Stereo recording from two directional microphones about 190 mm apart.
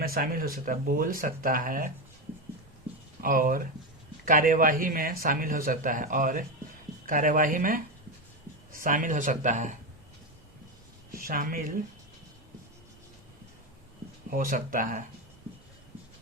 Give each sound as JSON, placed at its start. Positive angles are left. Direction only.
{"t": 0.0, "sound": "a man's voice", "side_deg": -50}
{"t": 3.2, "sound": "a man's voice", "side_deg": -45}
{"t": 11.1, "sound": "a man's voice", "side_deg": -50}
{"t": 14.3, "sound": "a man's voice", "side_deg": -45}